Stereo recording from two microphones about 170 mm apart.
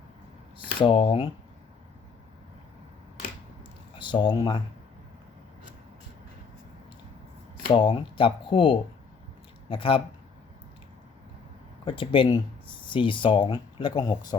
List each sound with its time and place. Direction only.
0.6 s speech: 30° left (ahead or behind)
3.9 s speech: 30° left (ahead or behind)
7.7 s speech: 30° left (ahead or behind)
11.9 s speech: 30° left (ahead or behind)